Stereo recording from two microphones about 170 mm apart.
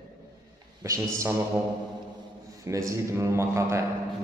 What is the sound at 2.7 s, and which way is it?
A man's voice, 20° right (ahead or behind).